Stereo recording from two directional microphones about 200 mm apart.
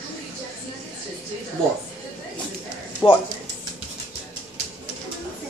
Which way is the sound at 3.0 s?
20° left (ahead or behind).